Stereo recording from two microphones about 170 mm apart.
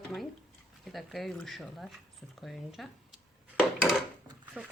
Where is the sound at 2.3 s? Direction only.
Centre (ahead or behind).